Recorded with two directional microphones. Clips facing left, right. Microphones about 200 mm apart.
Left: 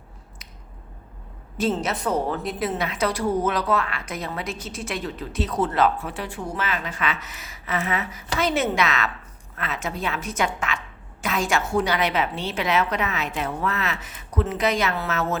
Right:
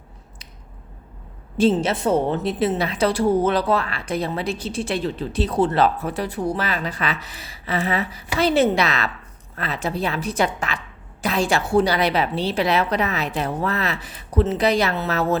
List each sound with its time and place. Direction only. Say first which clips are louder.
1.8 s a woman's voice: right 5 dB; 30° right (ahead or behind)